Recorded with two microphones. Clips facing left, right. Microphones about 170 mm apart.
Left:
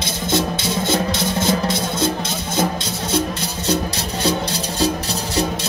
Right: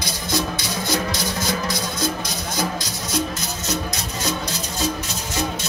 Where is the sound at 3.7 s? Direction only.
30° left (ahead or behind).